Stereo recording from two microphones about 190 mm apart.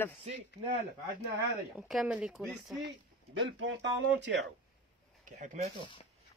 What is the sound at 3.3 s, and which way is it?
Speech, 85° right.